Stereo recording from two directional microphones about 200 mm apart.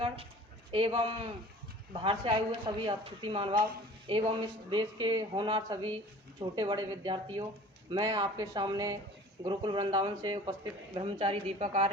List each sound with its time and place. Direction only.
0.7 s a woman's voice: 25° right (ahead or behind)